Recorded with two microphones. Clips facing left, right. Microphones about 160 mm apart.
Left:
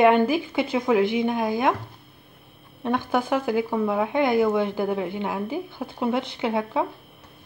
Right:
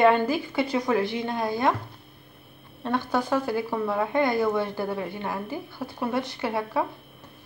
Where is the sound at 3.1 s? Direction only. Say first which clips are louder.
Left 2 dB; 15° left (ahead or behind).